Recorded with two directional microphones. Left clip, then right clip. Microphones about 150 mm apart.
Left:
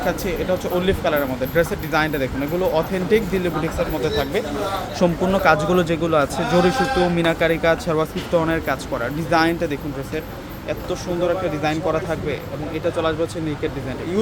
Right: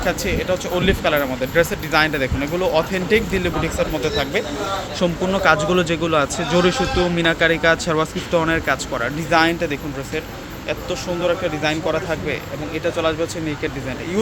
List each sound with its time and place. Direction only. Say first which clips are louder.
0.0 s speech: right 1 dB; centre (ahead or behind)
4.9 s speech: left 2 dB; 20° left (ahead or behind); by 9.7 s 5° left (ahead or behind)
11.3 s speech: right 3 dB; centre (ahead or behind)